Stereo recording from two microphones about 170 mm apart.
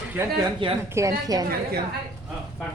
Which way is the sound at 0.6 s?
30° right (ahead or behind).